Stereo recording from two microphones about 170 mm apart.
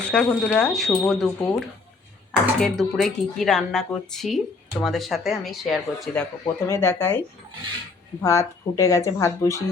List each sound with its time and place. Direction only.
0.0 s speech: 5° left (ahead or behind)
6.4 s speech: 15° left (ahead or behind)
8.2 s a woman's voice: 20° left (ahead or behind)